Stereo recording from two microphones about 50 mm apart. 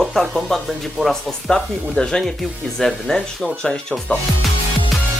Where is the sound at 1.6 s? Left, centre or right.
Left.